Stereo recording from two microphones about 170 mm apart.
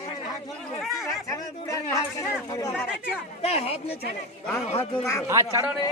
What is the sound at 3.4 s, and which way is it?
Speech, 35° left (ahead or behind).